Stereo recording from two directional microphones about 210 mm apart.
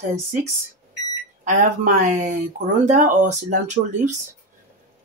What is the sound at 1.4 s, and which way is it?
Speech, 35° right (ahead or behind).